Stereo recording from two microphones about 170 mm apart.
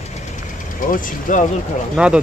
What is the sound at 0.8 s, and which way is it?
Speech, 50° left (ahead or behind).